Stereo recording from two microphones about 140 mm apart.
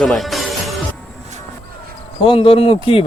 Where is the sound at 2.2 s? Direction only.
40° left (ahead or behind).